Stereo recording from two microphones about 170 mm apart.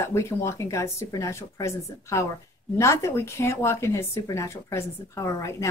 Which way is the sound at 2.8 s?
15° left (ahead or behind).